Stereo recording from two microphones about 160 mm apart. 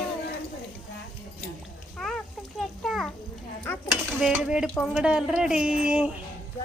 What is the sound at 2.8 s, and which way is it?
Stir, centre (ahead or behind).